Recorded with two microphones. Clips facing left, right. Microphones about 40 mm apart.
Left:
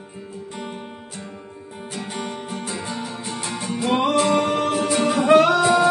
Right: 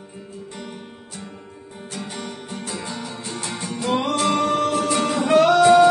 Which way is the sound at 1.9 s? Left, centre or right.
Centre.